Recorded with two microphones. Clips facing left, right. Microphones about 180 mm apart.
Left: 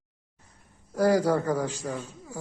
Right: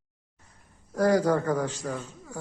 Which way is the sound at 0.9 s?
10° left (ahead or behind).